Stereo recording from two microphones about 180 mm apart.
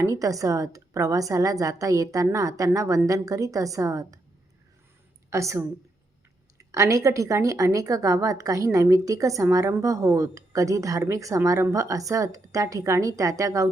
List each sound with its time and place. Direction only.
0.0 s a woman's voice: 20° right (ahead or behind)
5.3 s a woman's voice: 15° right (ahead or behind)